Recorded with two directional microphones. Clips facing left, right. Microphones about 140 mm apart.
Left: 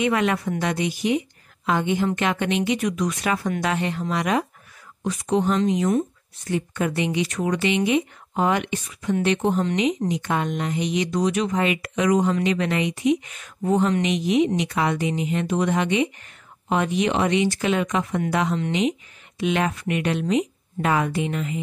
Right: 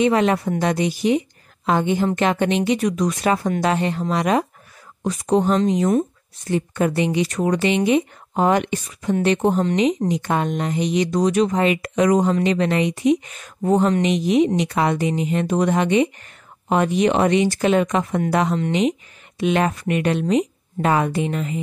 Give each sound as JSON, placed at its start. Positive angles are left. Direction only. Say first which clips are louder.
{"t": 0.0, "sound": "speech", "louder": "right 4 dB", "side_deg": -30}